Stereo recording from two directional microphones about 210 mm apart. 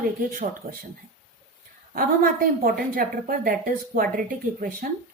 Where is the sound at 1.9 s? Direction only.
45° right (ahead or behind).